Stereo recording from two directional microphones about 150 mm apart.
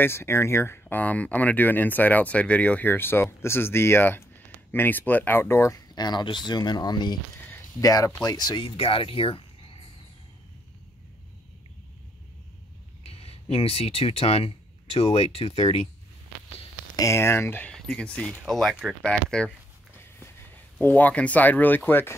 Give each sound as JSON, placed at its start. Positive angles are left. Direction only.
{"t": 0.0, "sound": "speech", "side_deg": 15}
{"t": 13.0, "sound": "speech", "side_deg": 40}
{"t": 16.9, "sound": "speech", "side_deg": 20}
{"t": 20.0, "sound": "a sound", "side_deg": 15}
{"t": 20.7, "sound": "speech", "side_deg": 10}